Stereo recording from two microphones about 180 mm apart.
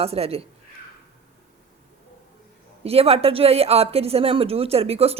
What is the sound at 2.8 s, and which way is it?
Speech, 35° right (ahead or behind).